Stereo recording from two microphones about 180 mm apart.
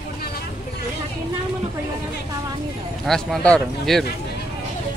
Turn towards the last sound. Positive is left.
turn(degrees=5)  # may be behind; listen again after turning